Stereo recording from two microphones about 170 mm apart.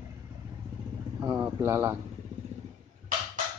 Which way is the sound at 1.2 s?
15° right (ahead or behind).